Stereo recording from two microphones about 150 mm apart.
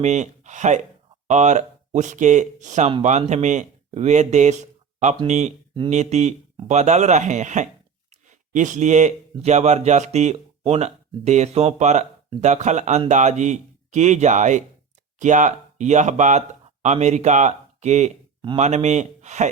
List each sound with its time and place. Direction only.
0.0 s speech: 50° right (ahead or behind)
8.1 s a sound: 55° right (ahead or behind)
9.4 s speech: 50° right (ahead or behind)